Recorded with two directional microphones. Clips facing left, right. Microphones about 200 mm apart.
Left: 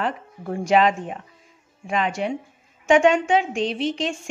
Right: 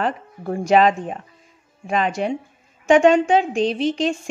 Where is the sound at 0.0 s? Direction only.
40° right (ahead or behind).